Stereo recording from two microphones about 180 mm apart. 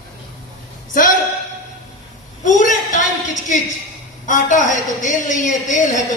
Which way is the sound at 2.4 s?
45° left (ahead or behind).